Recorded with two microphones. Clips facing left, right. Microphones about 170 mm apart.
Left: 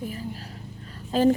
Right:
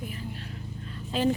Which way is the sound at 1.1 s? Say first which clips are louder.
Left 6 dB; 45° left (ahead or behind).